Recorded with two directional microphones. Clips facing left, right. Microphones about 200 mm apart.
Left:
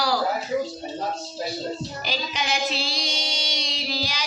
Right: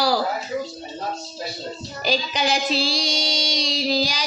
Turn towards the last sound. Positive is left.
turn(degrees=-35)  # may be behind; listen again after turning